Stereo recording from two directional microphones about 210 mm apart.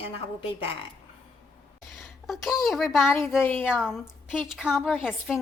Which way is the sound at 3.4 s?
10° left (ahead or behind).